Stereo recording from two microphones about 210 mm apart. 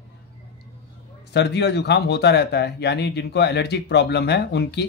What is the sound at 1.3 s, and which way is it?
Speech, 55° left (ahead or behind).